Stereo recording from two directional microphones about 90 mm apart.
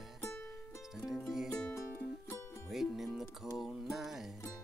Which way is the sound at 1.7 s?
25° left (ahead or behind).